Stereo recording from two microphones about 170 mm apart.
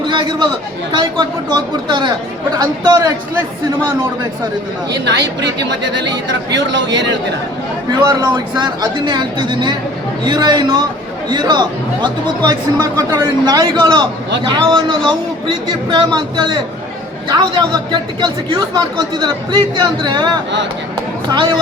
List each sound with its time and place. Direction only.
0.1 s chatter: 25° right (ahead or behind)
1.5 s speech: 25° right (ahead or behind)
5.0 s speech: 90° right
8.0 s speech: 25° right (ahead or behind)